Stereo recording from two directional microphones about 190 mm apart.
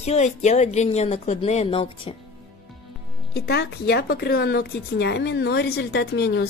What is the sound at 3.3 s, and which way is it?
A woman's voice, 60° left (ahead or behind).